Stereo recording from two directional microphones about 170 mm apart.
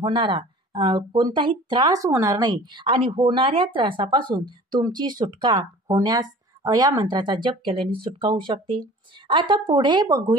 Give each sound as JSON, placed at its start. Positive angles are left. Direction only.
{"t": 0.0, "sound": "speech", "side_deg": -30}